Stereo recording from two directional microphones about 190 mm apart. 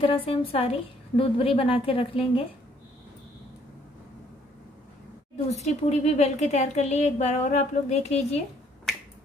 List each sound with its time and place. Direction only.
0.0 s a woman's voice: 30° left (ahead or behind)
5.5 s a woman's voice: 35° left (ahead or behind)